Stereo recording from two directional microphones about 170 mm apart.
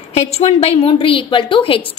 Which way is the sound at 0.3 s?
35° left (ahead or behind).